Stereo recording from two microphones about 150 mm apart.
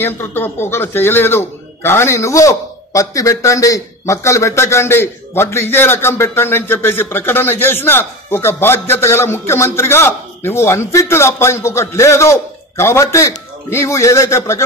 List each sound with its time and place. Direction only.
0.0 s a man's voice: 15° left (ahead or behind)